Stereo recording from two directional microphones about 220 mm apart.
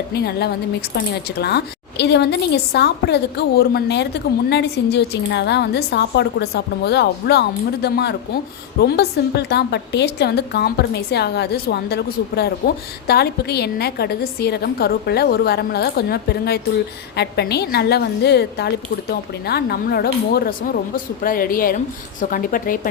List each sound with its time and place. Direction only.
0.1 s speech: 45° left (ahead or behind)